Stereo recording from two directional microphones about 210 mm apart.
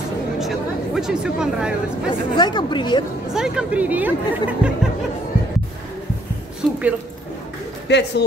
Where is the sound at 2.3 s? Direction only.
20° left (ahead or behind).